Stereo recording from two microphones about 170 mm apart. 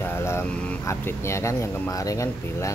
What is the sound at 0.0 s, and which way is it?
Vehicle, 15° left (ahead or behind).